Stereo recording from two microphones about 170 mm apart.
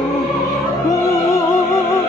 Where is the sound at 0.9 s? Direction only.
15° left (ahead or behind).